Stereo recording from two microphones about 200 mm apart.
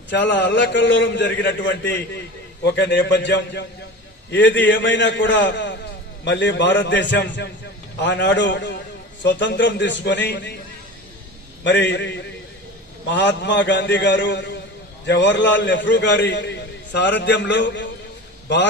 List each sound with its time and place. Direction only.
0.1 s a man's voice: 60° left (ahead or behind)
11.6 s a man's voice: 55° left (ahead or behind)